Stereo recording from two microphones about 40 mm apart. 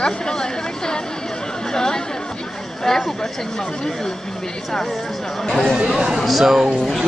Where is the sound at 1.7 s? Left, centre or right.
Centre.